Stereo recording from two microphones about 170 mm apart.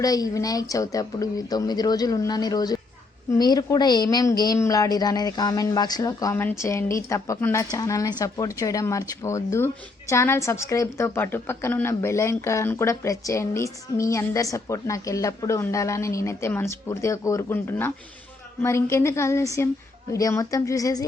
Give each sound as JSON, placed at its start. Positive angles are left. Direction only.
{"t": 0.0, "sound": "a woman's voice", "side_deg": 20}